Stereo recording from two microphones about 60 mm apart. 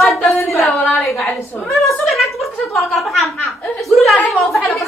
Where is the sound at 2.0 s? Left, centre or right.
Centre.